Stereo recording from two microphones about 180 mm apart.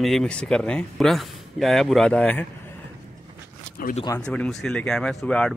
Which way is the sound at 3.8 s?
55° left (ahead or behind).